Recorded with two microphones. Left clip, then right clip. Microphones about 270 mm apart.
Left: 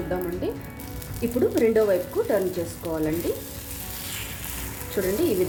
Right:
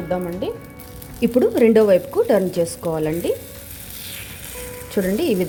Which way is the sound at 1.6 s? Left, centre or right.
Right.